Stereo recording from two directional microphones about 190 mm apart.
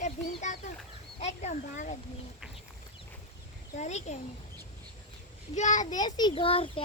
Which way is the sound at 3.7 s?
35° left (ahead or behind).